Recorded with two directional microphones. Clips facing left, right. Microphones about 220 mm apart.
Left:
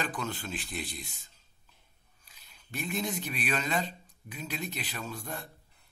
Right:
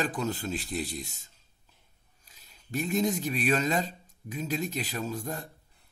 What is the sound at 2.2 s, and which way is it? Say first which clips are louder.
A man's voice: right 2 dB; 40° right (ahead or behind).